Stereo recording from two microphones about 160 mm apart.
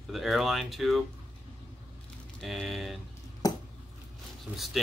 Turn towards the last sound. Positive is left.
turn(degrees=-10)  # may be behind; listen again after turning